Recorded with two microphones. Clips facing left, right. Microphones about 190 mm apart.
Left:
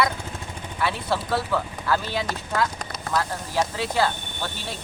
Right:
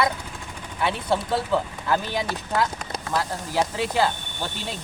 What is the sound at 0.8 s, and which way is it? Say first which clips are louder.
Speech: right 2 dB; 20° right (ahead or behind).